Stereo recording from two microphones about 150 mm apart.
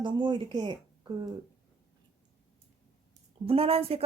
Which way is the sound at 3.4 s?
40° right (ahead or behind).